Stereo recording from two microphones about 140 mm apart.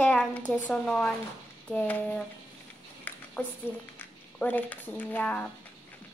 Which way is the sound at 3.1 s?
10° left (ahead or behind).